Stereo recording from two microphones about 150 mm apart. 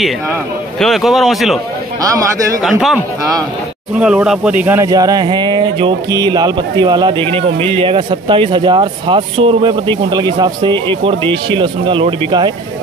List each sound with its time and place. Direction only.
0.7 s a man's voice: centre (ahead or behind)
2.0 s speech: 25° right (ahead or behind)
2.6 s a man's voice: centre (ahead or behind)
4.0 s speech: 5° right (ahead or behind)
4.8 s speech: 25° right (ahead or behind)